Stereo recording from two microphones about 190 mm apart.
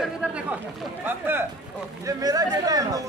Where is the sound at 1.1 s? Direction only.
10° right (ahead or behind).